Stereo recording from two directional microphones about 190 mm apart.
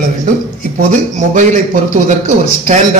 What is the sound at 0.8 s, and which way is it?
A man's voice, 40° right (ahead or behind).